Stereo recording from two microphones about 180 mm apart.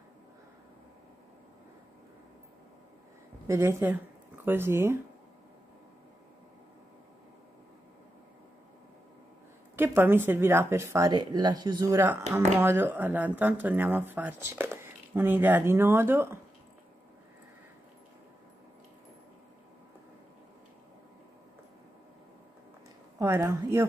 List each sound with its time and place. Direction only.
3.4 s speech: 15° right (ahead or behind)
9.8 s speech: 10° right (ahead or behind)
23.1 s a woman's voice: 15° right (ahead or behind)